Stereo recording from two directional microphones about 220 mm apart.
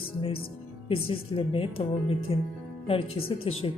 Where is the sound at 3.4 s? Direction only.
25° left (ahead or behind).